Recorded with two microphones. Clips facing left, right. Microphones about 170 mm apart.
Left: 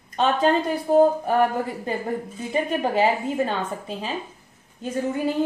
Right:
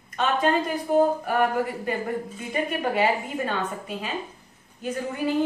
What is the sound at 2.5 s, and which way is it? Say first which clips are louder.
A woman's voice: left 3 dB; 25° left (ahead or behind).